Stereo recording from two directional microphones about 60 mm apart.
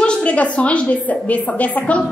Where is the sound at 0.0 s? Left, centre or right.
Centre.